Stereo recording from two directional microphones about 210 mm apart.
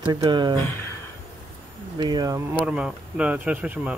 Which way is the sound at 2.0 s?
20° right (ahead or behind).